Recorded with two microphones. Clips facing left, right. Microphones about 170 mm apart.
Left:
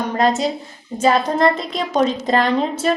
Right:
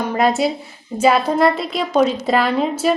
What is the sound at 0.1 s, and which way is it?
A woman's voice, 10° right (ahead or behind).